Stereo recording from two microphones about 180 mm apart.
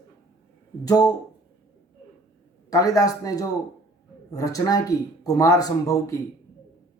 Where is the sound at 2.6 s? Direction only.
20° left (ahead or behind).